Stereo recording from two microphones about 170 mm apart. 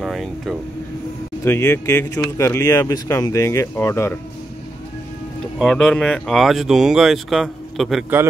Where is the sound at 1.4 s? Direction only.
15° left (ahead or behind).